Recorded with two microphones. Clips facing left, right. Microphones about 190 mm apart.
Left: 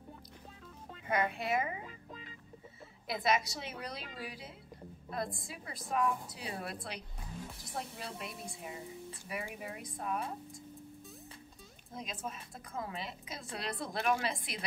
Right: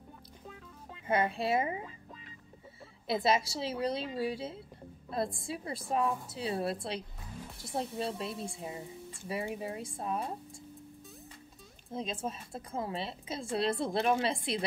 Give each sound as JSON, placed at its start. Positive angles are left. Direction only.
{"t": 1.0, "sound": "a woman's voice", "side_deg": -25}
{"t": 3.1, "sound": "a woman's voice", "side_deg": -30}
{"t": 11.9, "sound": "a woman's voice", "side_deg": -30}